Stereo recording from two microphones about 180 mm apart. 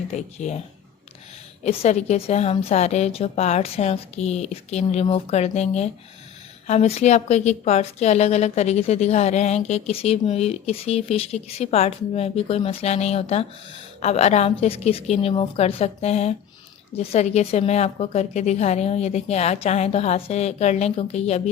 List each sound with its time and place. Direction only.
0.1 s a woman's voice: 40° left (ahead or behind)
1.6 s a woman's voice: 40° left (ahead or behind)